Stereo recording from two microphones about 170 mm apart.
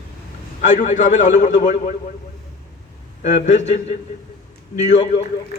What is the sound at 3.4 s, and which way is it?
Speech, 40° left (ahead or behind).